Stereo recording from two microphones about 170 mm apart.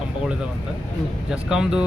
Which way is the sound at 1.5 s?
5° right (ahead or behind).